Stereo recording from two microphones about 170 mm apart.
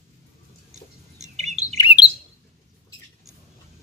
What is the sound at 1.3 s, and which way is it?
Bird, 40° right (ahead or behind).